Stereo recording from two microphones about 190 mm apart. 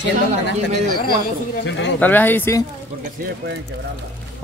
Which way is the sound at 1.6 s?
70° left (ahead or behind).